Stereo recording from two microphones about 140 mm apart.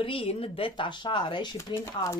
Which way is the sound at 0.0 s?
40° left (ahead or behind).